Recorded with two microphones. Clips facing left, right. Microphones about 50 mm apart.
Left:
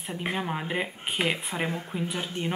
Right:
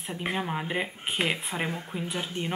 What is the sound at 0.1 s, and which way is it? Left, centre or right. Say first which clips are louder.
Speech: even; centre.